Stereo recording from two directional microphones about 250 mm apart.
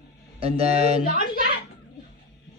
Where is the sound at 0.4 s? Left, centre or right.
Right.